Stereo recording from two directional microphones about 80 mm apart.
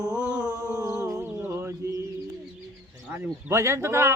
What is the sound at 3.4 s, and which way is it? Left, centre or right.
Speech, right.